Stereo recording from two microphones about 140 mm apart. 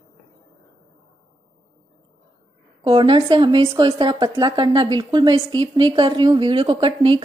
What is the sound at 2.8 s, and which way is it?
A woman's voice, 40° right (ahead or behind).